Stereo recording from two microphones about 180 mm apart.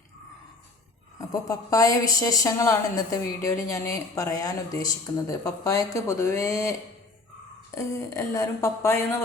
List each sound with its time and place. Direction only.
1.2 s a woman's voice: 20° left (ahead or behind)
7.8 s speech: 15° left (ahead or behind)